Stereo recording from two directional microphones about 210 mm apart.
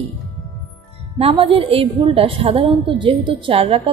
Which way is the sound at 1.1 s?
25° right (ahead or behind).